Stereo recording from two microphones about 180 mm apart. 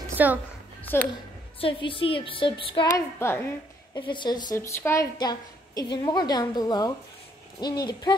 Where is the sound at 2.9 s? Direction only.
15° left (ahead or behind).